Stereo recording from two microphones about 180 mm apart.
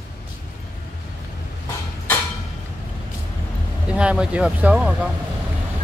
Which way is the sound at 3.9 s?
5° right (ahead or behind).